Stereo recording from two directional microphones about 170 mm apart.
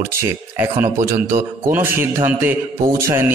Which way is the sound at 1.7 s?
15° right (ahead or behind).